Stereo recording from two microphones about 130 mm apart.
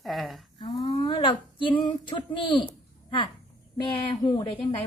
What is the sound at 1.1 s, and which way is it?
A woman's voice, 40° left (ahead or behind).